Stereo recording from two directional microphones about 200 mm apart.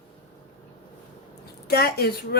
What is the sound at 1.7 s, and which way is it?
Speech, 50° left (ahead or behind).